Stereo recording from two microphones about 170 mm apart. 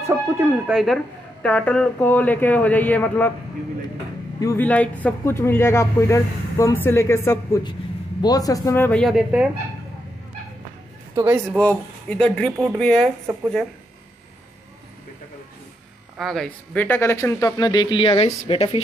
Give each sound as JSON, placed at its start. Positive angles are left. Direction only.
{"t": 0.0, "sound": "speech", "side_deg": -15}
{"t": 0.7, "sound": "speech", "side_deg": 0}
{"t": 4.4, "sound": "speech", "side_deg": 15}
{"t": 9.0, "sound": "speech", "side_deg": -5}
{"t": 11.1, "sound": "speech", "side_deg": -20}
{"t": 11.5, "sound": "speech", "side_deg": 10}
{"t": 16.2, "sound": "speech", "side_deg": 0}